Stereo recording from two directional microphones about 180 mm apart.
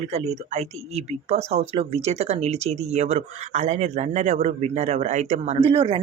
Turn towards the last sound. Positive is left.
turn(degrees=-30)  # may be behind; listen again after turning